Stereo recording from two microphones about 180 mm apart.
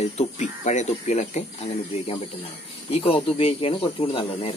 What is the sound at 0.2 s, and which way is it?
Speech, 40° left (ahead or behind).